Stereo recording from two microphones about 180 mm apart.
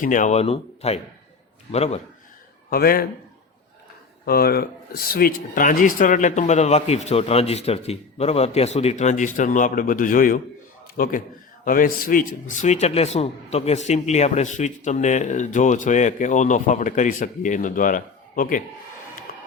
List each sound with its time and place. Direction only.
0.0 s speech: 45° left (ahead or behind)
2.6 s a man's voice: 55° left (ahead or behind)
4.3 s a man's voice: 60° left (ahead or behind)